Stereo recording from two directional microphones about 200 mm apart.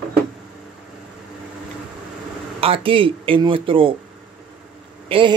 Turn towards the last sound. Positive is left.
turn(degrees=-25)  # may be behind; listen again after turning